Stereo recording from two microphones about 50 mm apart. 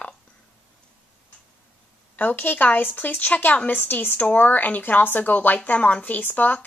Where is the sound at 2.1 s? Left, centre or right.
Left.